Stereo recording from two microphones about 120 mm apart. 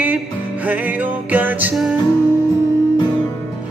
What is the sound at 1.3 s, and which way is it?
Music, 15° right (ahead or behind).